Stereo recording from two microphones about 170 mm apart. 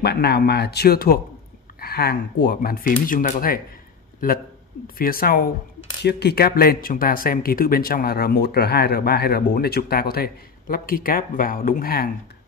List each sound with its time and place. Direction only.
0.0 s speech: 75° left (ahead or behind); by 3.6 s 55° left (ahead or behind)
4.8 s speech: 60° left (ahead or behind)
6.0 s speech: 75° left (ahead or behind)